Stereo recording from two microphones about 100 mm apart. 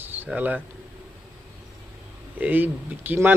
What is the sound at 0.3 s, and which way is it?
Speech, 15° right (ahead or behind).